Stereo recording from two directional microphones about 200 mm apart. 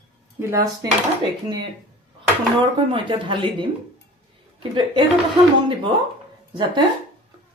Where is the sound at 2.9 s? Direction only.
25° right (ahead or behind).